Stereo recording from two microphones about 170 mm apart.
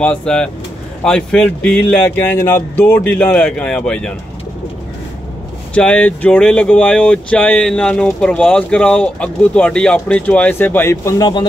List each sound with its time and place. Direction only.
0.0 s speech: 5° left (ahead or behind)
5.8 s speech: 5° left (ahead or behind); by 11.4 s 20° left (ahead or behind)